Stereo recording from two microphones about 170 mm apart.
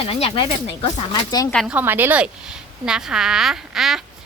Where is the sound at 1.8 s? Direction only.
10° right (ahead or behind).